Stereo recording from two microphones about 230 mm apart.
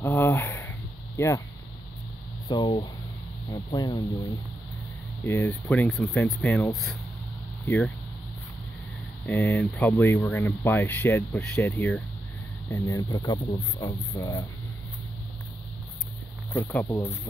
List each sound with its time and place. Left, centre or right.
0.0 s a sound: centre
2.4 s speech: centre
5.2 s speech: centre
9.2 s speech: centre
16.5 s speech: centre